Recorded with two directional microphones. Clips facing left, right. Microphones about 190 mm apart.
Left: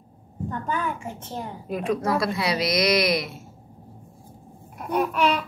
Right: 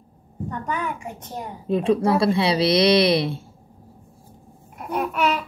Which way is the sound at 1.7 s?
30° right (ahead or behind).